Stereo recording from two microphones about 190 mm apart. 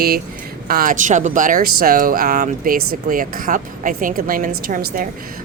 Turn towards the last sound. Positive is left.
turn(degrees=-45)  # may be behind; listen again after turning